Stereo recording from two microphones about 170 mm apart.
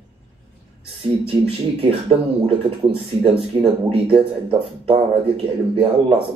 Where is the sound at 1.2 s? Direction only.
35° right (ahead or behind).